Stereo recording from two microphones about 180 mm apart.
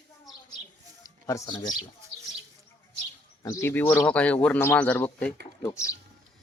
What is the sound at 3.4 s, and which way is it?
Speech, 15° left (ahead or behind).